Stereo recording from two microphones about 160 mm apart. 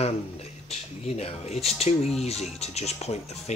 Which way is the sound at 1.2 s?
40° left (ahead or behind).